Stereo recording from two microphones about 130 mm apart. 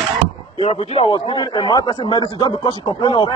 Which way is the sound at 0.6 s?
50° left (ahead or behind).